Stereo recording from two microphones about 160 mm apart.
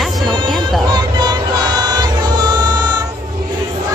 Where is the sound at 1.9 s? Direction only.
25° right (ahead or behind).